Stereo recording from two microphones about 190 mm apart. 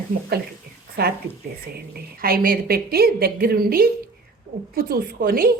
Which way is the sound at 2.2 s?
50° right (ahead or behind).